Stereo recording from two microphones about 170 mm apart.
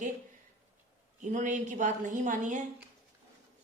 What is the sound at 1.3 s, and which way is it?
A woman's voice, 45° right (ahead or behind).